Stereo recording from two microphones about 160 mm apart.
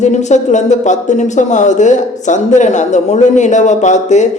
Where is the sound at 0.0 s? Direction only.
45° left (ahead or behind).